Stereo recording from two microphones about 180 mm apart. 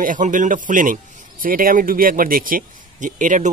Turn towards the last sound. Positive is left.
turn(degrees=-45)  # may be behind; listen again after turning